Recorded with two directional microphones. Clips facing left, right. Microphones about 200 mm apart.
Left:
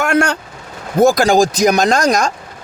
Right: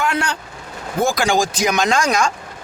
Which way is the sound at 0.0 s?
50° left (ahead or behind).